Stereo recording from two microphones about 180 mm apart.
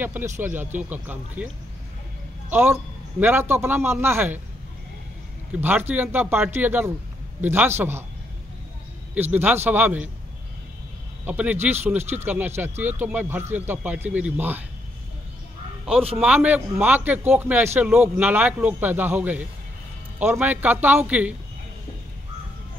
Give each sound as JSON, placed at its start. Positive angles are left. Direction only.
{"t": 0.0, "sound": "a man's voice", "side_deg": -10}
{"t": 2.5, "sound": "a man's voice", "side_deg": -10}
{"t": 5.5, "sound": "a man's voice", "side_deg": -10}
{"t": 9.1, "sound": "a man's voice", "side_deg": -10}
{"t": 11.2, "sound": "a man's voice", "side_deg": -10}
{"t": 16.2, "sound": "a man's voice", "side_deg": -5}